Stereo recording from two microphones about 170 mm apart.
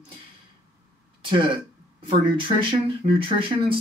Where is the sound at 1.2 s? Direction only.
30° right (ahead or behind).